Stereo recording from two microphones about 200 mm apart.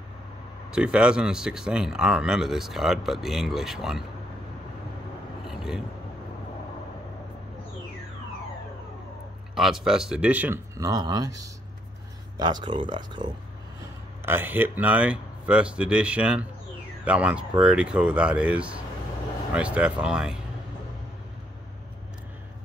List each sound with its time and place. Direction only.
0.7 s speech: 5° right (ahead or behind)
5.4 s vehicle: centre (ahead or behind)
9.6 s speech: centre (ahead or behind); by 13.3 s 25° right (ahead or behind)
14.2 s speech: 10° right (ahead or behind)